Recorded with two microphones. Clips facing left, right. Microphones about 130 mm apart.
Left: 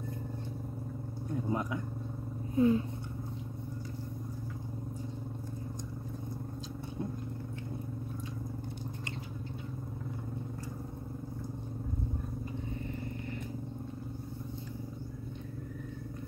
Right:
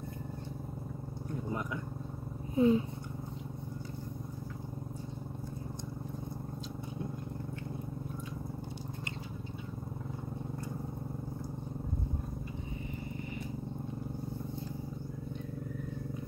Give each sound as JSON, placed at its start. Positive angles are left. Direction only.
{"t": 1.5, "sound": "vehicle", "side_deg": 25}
{"t": 2.5, "sound": "purr", "side_deg": -20}